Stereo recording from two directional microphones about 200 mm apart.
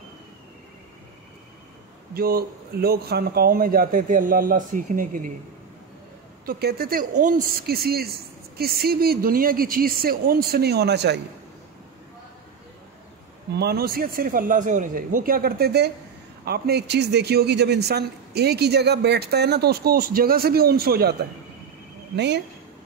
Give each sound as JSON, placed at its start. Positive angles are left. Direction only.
{"t": 2.1, "sound": "a man's voice", "side_deg": -50}
{"t": 6.4, "sound": "a man's voice", "side_deg": -50}
{"t": 13.6, "sound": "a man's voice", "side_deg": -50}
{"t": 22.1, "sound": "speech", "side_deg": -55}